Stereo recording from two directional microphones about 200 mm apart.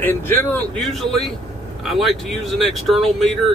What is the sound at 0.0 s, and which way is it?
Speech, 10° left (ahead or behind).